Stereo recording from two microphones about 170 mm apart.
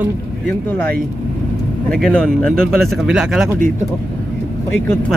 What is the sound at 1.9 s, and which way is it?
Speech, 5° left (ahead or behind).